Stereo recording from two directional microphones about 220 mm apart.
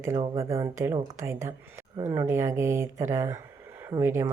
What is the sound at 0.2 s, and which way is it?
Speech, 15° right (ahead or behind).